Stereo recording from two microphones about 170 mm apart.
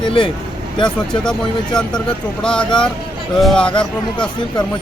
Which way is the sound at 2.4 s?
5° left (ahead or behind).